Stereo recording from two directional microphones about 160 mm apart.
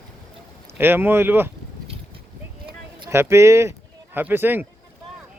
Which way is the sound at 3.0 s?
15° right (ahead or behind).